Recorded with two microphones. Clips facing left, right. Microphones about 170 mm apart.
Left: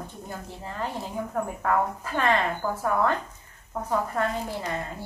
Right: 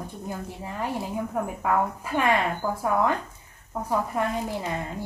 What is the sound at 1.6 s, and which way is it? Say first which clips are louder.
Speech: even; 10° right (ahead or behind).